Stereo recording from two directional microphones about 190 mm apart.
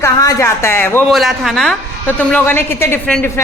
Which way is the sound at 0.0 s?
15° left (ahead or behind).